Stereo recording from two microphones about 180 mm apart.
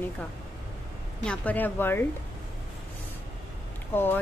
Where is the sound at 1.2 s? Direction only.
5° left (ahead or behind).